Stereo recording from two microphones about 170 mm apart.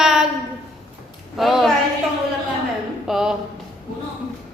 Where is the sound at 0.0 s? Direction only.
5° right (ahead or behind).